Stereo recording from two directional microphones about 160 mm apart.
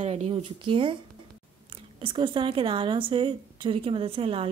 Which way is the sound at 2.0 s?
30° right (ahead or behind).